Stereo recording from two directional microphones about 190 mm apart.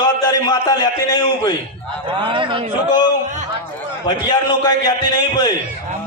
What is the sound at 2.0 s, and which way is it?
Speech, 25° right (ahead or behind).